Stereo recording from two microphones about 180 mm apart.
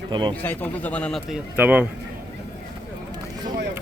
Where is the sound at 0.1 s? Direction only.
25° right (ahead or behind).